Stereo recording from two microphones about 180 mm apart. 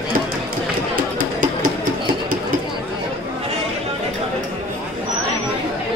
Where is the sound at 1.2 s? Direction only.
50° right (ahead or behind).